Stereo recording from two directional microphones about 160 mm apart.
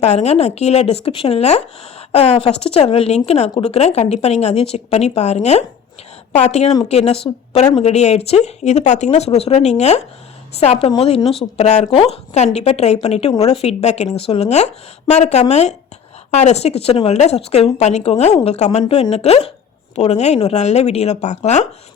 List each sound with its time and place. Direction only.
0.0 s speech: 45° left (ahead or behind)